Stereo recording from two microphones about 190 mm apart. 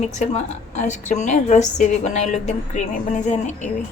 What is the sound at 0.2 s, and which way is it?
Speech, 40° left (ahead or behind).